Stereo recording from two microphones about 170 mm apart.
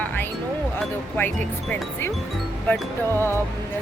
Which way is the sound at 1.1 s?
10° left (ahead or behind).